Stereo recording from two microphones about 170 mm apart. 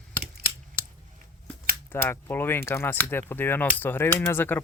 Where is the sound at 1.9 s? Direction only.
10° left (ahead or behind).